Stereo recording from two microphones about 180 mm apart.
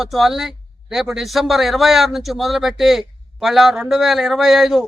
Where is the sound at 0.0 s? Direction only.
Centre (ahead or behind).